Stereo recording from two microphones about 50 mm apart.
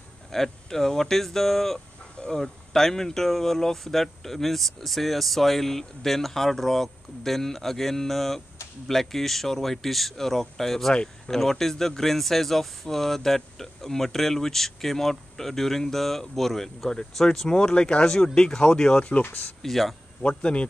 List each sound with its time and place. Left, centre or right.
0.3 s speech: centre
19.6 s speech: centre
20.2 s a man's voice: left